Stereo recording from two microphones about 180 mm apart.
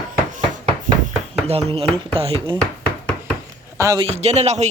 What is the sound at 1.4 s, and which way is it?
Speech, 30° right (ahead or behind).